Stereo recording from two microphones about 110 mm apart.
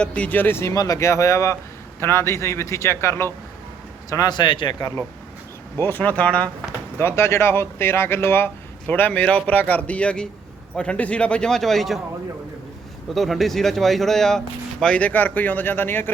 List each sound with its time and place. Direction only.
0.0 s speech: 10° left (ahead or behind)
4.1 s speech: 35° left (ahead or behind)
5.8 s speech: 15° left (ahead or behind)
7.0 s speech: 25° left (ahead or behind); by 11.9 s centre (ahead or behind)
13.1 s speech: centre (ahead or behind); by 16.0 s 20° left (ahead or behind)